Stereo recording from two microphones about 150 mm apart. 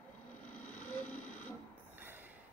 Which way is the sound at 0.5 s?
10° left (ahead or behind).